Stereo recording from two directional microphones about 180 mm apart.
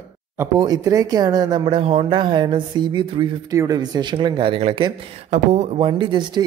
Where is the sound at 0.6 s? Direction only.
20° right (ahead or behind).